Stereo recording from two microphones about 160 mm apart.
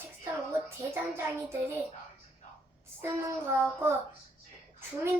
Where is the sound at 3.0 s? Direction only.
15° right (ahead or behind).